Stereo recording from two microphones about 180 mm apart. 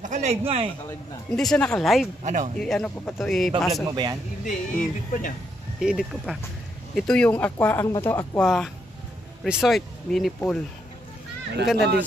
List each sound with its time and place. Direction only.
0.0 s a man's voice: 40° right (ahead or behind)
1.3 s a man's voice: 5° left (ahead or behind)
2.2 s speech: 40° right (ahead or behind)
2.6 s a man's voice: 5° left (ahead or behind)
3.9 s speech: 25° right (ahead or behind)
4.5 s speech: 50° left (ahead or behind)
5.8 s a man's voice: centre (ahead or behind); by 8.3 s 15° left (ahead or behind)
8.4 s a man's voice: centre (ahead or behind)